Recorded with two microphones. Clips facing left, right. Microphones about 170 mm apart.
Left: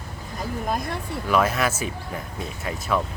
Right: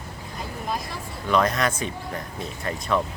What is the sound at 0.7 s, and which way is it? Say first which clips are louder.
Speech: left 2 dB; 55° left (ahead or behind).